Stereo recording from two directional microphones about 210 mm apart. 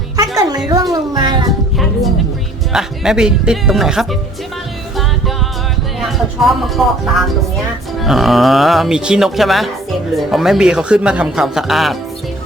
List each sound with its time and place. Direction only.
0.2 s music: 15° right (ahead or behind)
0.9 s a child's voice: 20° right (ahead or behind)
1.8 s speech: centre (ahead or behind)
6.0 s speech: centre (ahead or behind)